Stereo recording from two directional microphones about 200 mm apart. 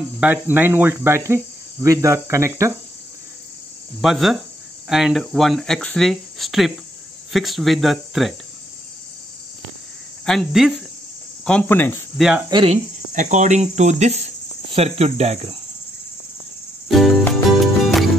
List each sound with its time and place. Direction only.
0.2 s cricket: 10° right (ahead or behind)
4.0 s speech: centre (ahead or behind)
10.2 s speech: centre (ahead or behind)
12.2 s speech: 5° right (ahead or behind)
12.4 s speech: 25° right (ahead or behind)
16.9 s music: centre (ahead or behind)